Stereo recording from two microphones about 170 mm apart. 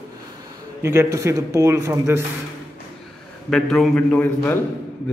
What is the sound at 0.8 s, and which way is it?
A man's voice, 15° right (ahead or behind).